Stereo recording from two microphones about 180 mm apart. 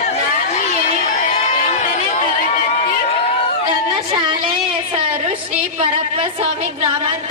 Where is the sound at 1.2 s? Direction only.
45° left (ahead or behind).